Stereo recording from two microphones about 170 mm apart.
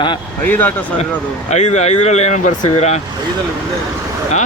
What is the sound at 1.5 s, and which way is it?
Speech, 40° left (ahead or behind).